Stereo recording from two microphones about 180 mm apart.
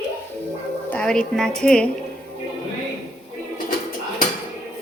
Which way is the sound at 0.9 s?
5° left (ahead or behind).